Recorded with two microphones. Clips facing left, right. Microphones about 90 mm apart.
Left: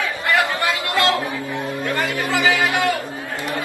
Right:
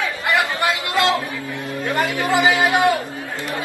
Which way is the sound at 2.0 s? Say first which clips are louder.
Right 5 dB; 20° right (ahead or behind).